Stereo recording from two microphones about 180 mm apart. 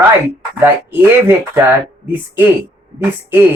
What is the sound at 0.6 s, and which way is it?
Speech, 10° right (ahead or behind).